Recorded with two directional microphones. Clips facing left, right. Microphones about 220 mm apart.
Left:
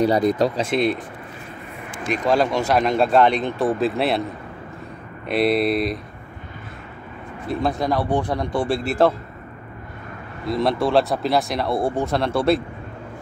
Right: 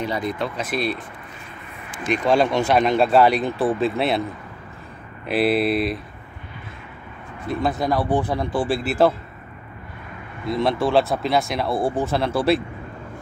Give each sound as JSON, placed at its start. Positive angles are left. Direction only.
{"t": 0.0, "sound": "speech", "side_deg": 40}
{"t": 0.7, "sound": "speech", "side_deg": 20}
{"t": 2.0, "sound": "speech", "side_deg": 0}
{"t": 5.3, "sound": "speech", "side_deg": -5}
{"t": 7.4, "sound": "speech", "side_deg": 0}
{"t": 10.5, "sound": "speech", "side_deg": 0}